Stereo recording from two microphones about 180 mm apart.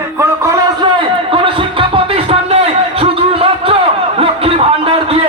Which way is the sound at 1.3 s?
30° right (ahead or behind).